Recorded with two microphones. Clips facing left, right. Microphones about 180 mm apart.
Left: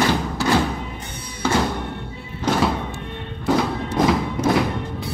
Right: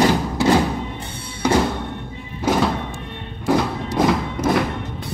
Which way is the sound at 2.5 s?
10° right (ahead or behind).